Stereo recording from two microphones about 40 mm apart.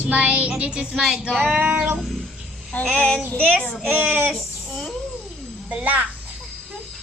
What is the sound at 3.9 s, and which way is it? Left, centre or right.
Speech, right.